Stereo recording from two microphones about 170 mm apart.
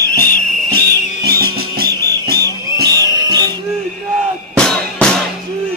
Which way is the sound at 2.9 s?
25° right (ahead or behind).